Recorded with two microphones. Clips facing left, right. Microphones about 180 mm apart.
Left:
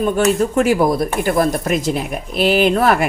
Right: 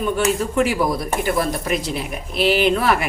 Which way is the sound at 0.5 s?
45° left (ahead or behind).